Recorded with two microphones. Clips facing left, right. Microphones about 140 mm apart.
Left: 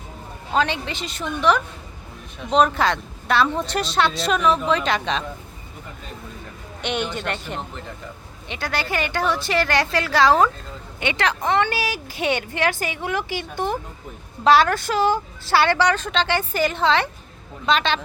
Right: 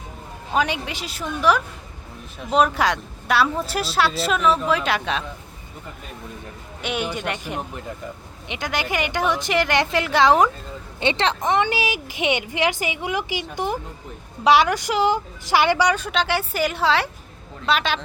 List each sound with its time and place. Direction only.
0.5 s a woman's voice: 10° right (ahead or behind)
6.8 s a woman's voice: 10° right (ahead or behind)